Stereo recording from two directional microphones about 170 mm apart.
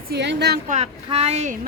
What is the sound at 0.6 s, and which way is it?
Speech, 40° right (ahead or behind).